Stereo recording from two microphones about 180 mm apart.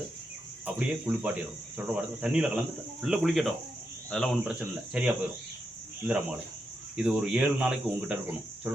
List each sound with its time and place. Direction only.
0.6 s speech: 5° right (ahead or behind)
4.6 s speech: 5° right (ahead or behind)
6.9 s speech: 5° right (ahead or behind)